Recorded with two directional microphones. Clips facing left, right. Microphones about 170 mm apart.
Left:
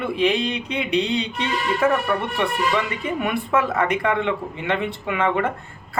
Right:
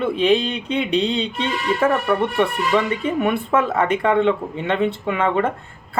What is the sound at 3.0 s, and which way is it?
Speech, 30° right (ahead or behind).